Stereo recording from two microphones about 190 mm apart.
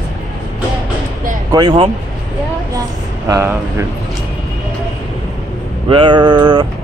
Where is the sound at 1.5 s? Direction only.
25° right (ahead or behind).